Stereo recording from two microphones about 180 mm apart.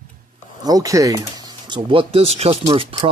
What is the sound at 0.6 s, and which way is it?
Speech, 20° right (ahead or behind).